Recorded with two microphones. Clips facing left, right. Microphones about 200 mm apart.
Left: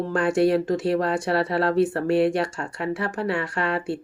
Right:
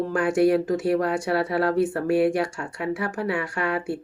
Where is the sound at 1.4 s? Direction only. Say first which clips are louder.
Even; 30° left (ahead or behind).